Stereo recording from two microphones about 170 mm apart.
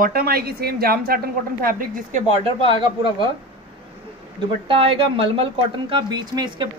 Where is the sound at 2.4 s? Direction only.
30° right (ahead or behind).